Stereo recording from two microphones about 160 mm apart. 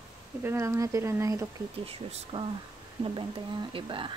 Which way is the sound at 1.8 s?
35° right (ahead or behind).